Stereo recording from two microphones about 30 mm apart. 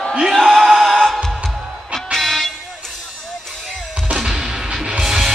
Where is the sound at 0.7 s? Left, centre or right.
Centre.